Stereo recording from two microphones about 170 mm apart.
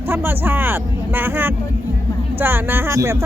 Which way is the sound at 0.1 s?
10° right (ahead or behind).